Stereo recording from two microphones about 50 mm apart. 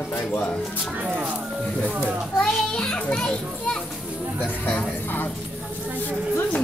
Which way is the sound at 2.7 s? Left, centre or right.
Centre.